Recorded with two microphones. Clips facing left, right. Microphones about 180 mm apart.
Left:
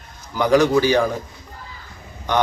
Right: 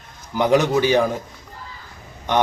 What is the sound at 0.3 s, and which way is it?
Speech, 20° right (ahead or behind).